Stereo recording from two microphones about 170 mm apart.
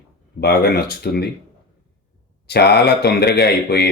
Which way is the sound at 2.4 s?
75° left (ahead or behind).